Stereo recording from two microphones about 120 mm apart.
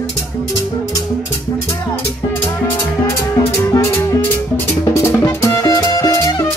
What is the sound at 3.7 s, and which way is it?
Music, 25° left (ahead or behind).